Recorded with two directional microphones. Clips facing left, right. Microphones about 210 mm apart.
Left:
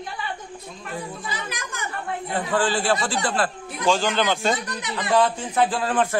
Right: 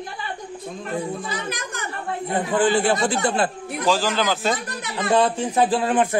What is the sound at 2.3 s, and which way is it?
A man's voice, 20° right (ahead or behind).